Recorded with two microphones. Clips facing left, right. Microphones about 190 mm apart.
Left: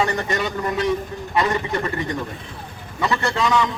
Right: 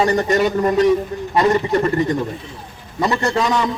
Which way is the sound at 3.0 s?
35° right (ahead or behind).